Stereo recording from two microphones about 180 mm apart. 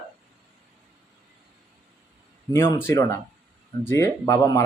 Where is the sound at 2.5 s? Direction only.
15° left (ahead or behind).